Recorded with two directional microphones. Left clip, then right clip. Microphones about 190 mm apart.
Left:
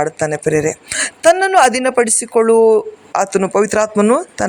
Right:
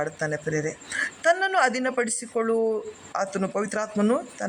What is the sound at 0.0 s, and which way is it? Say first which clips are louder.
A woman's voice: left 11 dB; 25° left (ahead or behind).